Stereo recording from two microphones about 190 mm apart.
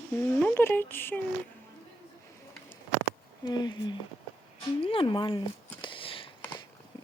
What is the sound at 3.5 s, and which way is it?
Speech, 20° left (ahead or behind).